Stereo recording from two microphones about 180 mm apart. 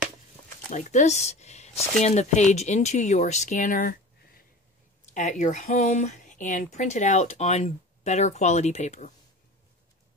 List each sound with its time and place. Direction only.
0.7 s speech: 40° left (ahead or behind)
5.1 s speech: 45° left (ahead or behind)